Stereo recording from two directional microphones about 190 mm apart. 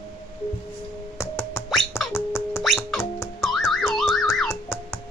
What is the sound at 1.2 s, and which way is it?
Music, 15° left (ahead or behind).